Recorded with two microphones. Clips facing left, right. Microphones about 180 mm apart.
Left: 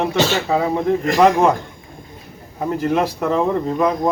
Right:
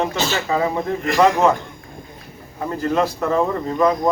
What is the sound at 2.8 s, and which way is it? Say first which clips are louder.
Speech: even; 15° left (ahead or behind).